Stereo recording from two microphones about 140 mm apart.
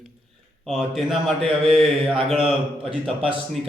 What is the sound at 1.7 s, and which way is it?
A man's voice, centre (ahead or behind).